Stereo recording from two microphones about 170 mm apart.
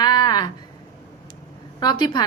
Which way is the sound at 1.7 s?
25° left (ahead or behind).